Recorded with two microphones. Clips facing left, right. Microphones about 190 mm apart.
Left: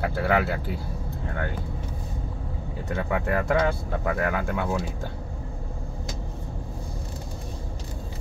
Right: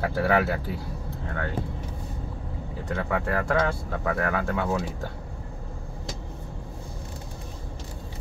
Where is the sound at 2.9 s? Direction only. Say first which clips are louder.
Left 1 dB; 20° left (ahead or behind).